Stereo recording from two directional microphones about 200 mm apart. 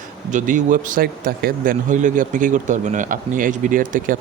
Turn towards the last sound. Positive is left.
turn(degrees=-40)  # may be behind; listen again after turning